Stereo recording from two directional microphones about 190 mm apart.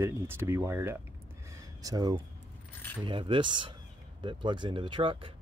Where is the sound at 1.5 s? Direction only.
20° right (ahead or behind).